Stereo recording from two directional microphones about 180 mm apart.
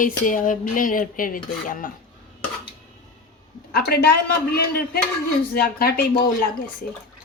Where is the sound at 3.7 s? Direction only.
60° left (ahead or behind).